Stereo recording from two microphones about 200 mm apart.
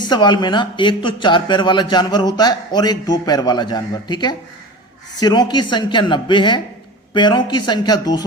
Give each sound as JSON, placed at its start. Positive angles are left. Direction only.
{"t": 0.1, "sound": "a man's voice", "side_deg": 20}